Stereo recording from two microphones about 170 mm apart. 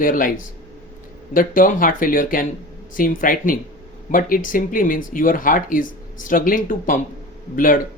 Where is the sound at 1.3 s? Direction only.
55° left (ahead or behind).